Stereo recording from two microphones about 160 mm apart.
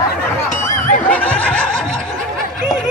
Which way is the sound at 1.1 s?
10° left (ahead or behind).